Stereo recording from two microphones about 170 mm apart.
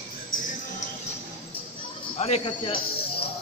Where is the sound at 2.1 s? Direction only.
40° left (ahead or behind).